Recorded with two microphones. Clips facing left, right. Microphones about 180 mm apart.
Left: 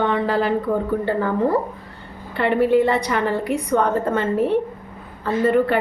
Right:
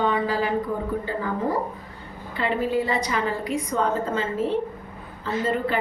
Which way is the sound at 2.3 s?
65° left (ahead or behind).